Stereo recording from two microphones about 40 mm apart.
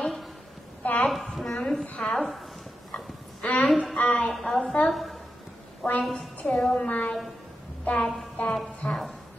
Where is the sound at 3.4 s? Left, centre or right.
Left.